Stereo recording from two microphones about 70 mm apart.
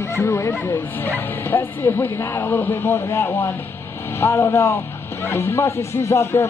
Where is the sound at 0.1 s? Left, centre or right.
Left.